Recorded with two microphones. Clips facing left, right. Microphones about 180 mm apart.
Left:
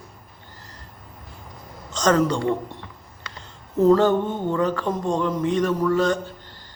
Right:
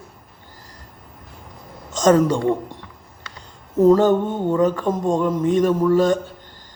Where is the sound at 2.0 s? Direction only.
10° right (ahead or behind).